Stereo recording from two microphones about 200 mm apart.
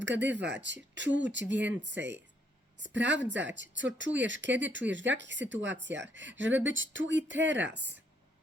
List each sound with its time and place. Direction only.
0.0 s speech: 60° right (ahead or behind)